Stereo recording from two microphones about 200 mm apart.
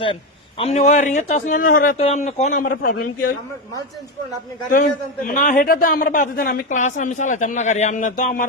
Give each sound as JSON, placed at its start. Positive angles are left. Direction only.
{"t": 0.6, "sound": "a man's voice", "side_deg": 35}
{"t": 4.7, "sound": "a man's voice", "side_deg": 45}
{"t": 6.7, "sound": "a man's voice", "side_deg": 35}